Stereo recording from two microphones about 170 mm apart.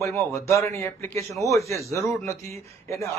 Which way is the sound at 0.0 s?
15° left (ahead or behind).